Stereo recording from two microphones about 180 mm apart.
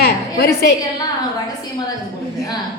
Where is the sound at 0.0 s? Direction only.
65° left (ahead or behind).